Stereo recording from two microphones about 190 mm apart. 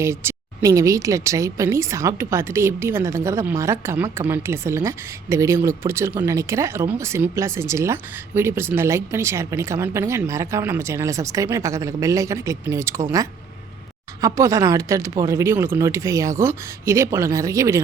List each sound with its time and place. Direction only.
0.0 s speech: 15° right (ahead or behind)
14.2 s speech: 15° right (ahead or behind)